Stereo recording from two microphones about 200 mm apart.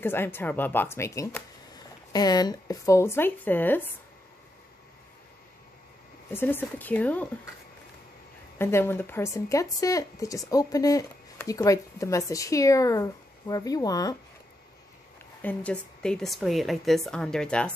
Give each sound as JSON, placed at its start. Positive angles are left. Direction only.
{"t": 0.0, "sound": "speech", "side_deg": 10}
{"t": 6.3, "sound": "speech", "side_deg": 10}
{"t": 8.5, "sound": "speech", "side_deg": 10}
{"t": 15.4, "sound": "a woman's voice", "side_deg": 5}